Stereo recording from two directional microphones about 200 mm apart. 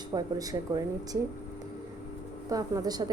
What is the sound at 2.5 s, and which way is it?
Speech, 20° right (ahead or behind).